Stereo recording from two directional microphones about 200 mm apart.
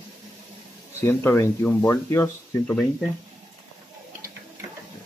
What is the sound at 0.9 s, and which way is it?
Speech, 10° left (ahead or behind).